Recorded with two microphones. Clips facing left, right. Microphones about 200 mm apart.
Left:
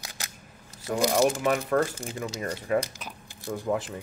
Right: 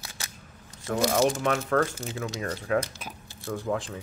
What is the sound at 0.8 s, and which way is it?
Speech, 15° left (ahead or behind).